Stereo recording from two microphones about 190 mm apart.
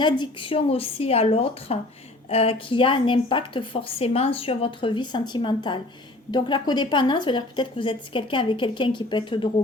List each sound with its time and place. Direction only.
0.0 s a woman's voice: 25° left (ahead or behind)